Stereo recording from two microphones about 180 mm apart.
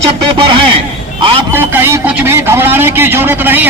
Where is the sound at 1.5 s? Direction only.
10° right (ahead or behind).